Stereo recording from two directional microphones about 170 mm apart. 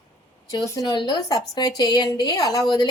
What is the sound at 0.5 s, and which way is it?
A woman's voice, 20° left (ahead or behind).